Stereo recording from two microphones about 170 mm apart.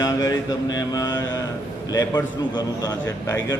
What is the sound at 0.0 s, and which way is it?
A man's voice, 20° left (ahead or behind).